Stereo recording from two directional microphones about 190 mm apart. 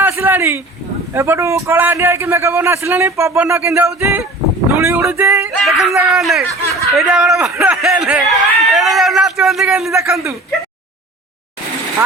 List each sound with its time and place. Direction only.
0.0 s a sound: 10° right (ahead or behind)
1.1 s a man's voice: 15° right (ahead or behind)
5.5 s speech: centre (ahead or behind)
9.9 s a man's voice: 15° right (ahead or behind)